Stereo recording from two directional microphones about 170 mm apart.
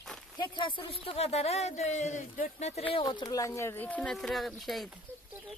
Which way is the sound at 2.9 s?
25° left (ahead or behind).